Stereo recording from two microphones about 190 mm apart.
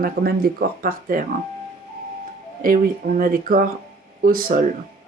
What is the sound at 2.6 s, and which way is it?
Speech, 45° right (ahead or behind).